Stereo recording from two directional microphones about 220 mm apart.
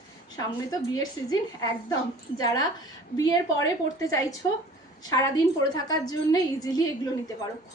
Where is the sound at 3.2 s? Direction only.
15° left (ahead or behind).